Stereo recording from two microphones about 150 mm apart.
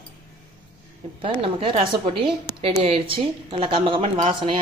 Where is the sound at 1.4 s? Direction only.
35° right (ahead or behind).